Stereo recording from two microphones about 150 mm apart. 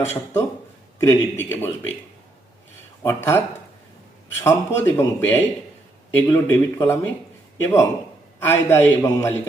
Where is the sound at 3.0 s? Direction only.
15° left (ahead or behind).